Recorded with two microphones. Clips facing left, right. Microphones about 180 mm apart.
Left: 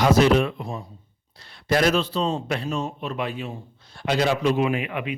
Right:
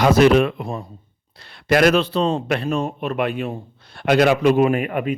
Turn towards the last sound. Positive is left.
turn(degrees=-45)  # may be behind; listen again after turning